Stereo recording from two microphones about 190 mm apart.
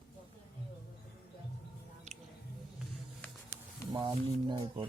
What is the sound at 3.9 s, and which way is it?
Speech, 25° right (ahead or behind).